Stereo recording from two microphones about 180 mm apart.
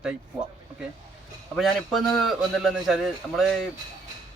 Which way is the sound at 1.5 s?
Centre (ahead or behind).